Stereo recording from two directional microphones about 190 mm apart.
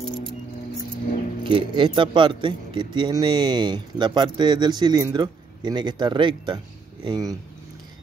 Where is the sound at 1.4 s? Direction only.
25° right (ahead or behind).